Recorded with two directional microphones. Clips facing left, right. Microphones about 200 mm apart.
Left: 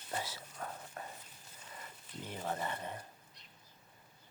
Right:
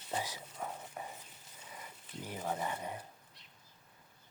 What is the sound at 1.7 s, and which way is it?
Speech, 10° right (ahead or behind).